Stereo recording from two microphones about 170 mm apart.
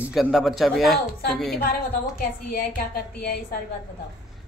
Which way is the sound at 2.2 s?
60° left (ahead or behind).